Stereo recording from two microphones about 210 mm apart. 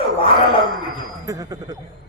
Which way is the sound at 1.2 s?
15° right (ahead or behind).